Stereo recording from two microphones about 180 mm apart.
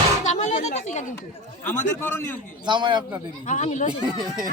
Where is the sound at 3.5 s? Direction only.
40° left (ahead or behind).